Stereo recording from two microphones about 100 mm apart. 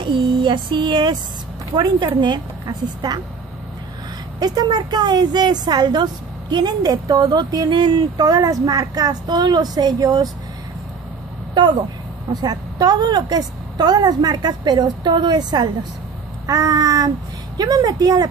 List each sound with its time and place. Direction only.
0.0 s a woman's voice: 55° right (ahead or behind)
4.4 s a woman's voice: 40° right (ahead or behind)
8.3 s a woman's voice: 35° right (ahead or behind)
11.5 s a woman's voice: 50° right (ahead or behind)